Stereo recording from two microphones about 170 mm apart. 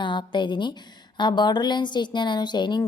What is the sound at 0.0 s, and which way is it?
A woman's voice, 25° left (ahead or behind).